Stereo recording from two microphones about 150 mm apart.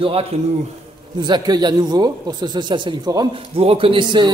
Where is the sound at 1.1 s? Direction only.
30° right (ahead or behind).